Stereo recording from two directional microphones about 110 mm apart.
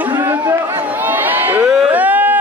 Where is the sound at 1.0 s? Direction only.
15° right (ahead or behind).